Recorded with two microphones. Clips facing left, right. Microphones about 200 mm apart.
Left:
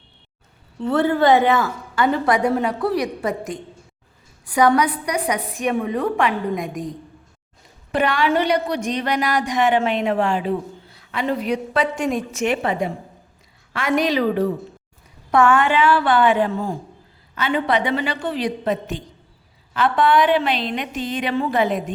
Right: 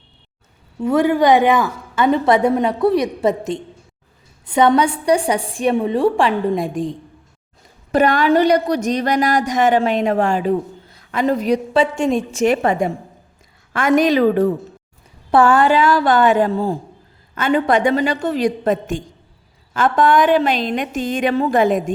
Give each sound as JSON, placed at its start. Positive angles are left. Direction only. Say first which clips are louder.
{"t": 0.8, "sound": "a woman's voice", "louder": "right 3 dB", "side_deg": -10}
{"t": 7.9, "sound": "a woman's voice", "louder": "right 5 dB", "side_deg": -40}
{"t": 11.7, "sound": "a woman's voice", "louder": "right 4 dB", "side_deg": -25}
{"t": 12.6, "sound": "a woman's voice", "louder": "right 5 dB", "side_deg": -45}
{"t": 15.3, "sound": "a woman's voice", "louder": "right 3 dB", "side_deg": -35}
{"t": 17.3, "sound": "a woman's voice", "louder": "right 4 dB", "side_deg": -45}